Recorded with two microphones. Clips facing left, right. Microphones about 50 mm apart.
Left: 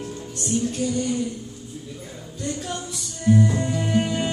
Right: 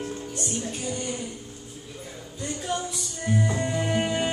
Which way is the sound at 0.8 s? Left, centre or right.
Centre.